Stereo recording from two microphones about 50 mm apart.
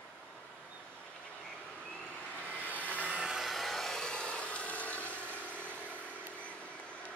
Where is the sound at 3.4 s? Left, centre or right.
Centre; by 5.0 s left.